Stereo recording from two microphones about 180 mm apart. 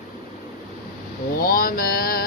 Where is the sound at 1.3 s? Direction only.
55° left (ahead or behind).